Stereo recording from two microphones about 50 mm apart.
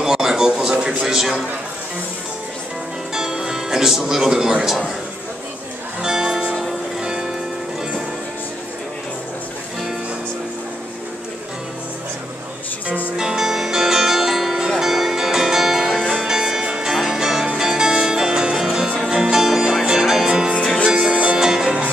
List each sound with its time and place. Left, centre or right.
0.0 s a sound: centre
3.2 s music: centre
6.0 s music: centre
13.2 s music: centre
21.4 s music: centre